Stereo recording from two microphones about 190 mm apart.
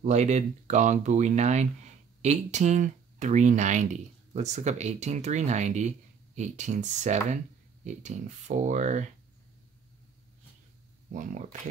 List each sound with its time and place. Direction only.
0.0 s speech: 35° right (ahead or behind)
11.1 s speech: 45° right (ahead or behind)